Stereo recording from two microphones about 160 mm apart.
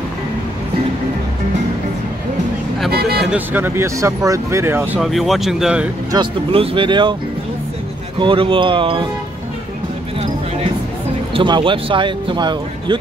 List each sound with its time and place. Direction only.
2.9 s a sound: 80° right
3.3 s speech: 10° right (ahead or behind)
5.0 s speech: centre (ahead or behind)
6.1 s speech: 35° right (ahead or behind)
8.2 s speech: 30° right (ahead or behind)
11.3 s speech: 30° right (ahead or behind)